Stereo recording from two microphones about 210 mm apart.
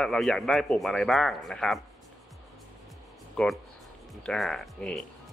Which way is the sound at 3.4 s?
5° left (ahead or behind).